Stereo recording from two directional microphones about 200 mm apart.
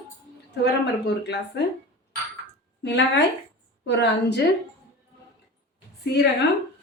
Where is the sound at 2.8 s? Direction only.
60° left (ahead or behind).